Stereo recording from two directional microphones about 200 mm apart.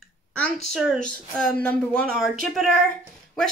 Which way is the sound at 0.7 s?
Centre (ahead or behind).